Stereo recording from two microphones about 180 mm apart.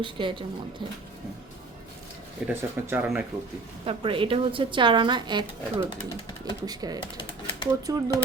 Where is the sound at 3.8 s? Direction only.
30° right (ahead or behind).